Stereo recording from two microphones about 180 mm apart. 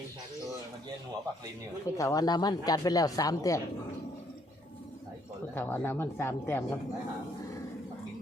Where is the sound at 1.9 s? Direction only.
20° left (ahead or behind).